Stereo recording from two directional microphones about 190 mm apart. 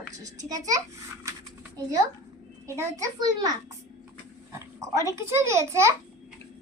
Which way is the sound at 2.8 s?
15° right (ahead or behind).